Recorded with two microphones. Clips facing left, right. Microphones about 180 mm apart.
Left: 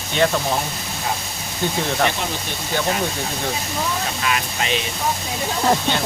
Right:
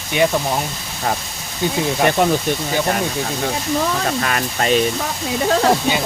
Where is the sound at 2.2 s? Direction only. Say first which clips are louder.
Right 11 dB; 55° right (ahead or behind).